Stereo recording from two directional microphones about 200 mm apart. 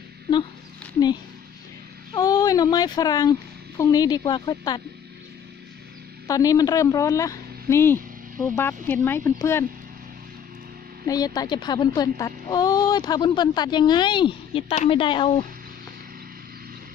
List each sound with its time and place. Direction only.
2.1 s speech: 20° left (ahead or behind)
6.2 s a woman's voice: 15° left (ahead or behind)
11.1 s a woman's voice: 20° left (ahead or behind)